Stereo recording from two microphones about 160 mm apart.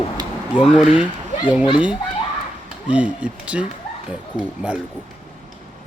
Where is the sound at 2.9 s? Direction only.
10° right (ahead or behind).